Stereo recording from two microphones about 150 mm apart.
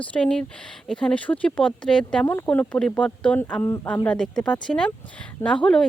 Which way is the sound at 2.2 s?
15° left (ahead or behind).